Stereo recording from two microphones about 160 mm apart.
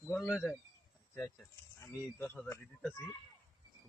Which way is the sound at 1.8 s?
15° left (ahead or behind).